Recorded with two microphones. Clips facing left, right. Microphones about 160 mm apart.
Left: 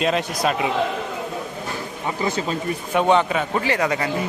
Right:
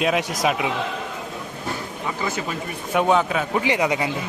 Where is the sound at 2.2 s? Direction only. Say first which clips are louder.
Left 4 dB; 20° left (ahead or behind).